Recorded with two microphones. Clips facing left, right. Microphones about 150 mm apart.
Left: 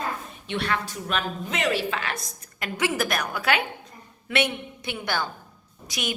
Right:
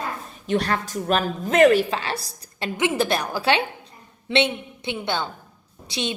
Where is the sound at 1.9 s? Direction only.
30° right (ahead or behind).